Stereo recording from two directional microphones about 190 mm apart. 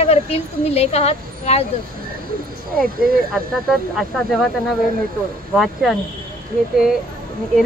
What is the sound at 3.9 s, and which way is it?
Speech, centre (ahead or behind).